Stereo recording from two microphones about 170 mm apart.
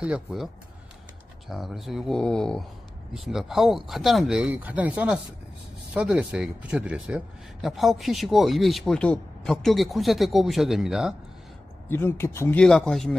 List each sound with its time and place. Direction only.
0.0 s speech: 5° right (ahead or behind)
1.5 s speech: centre (ahead or behind)
11.9 s speech: 15° left (ahead or behind)